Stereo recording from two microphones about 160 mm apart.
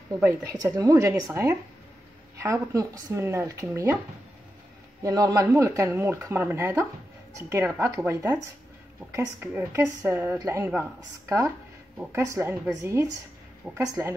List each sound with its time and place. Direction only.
0.2 s speech: 20° right (ahead or behind)
5.0 s speech: 20° right (ahead or behind)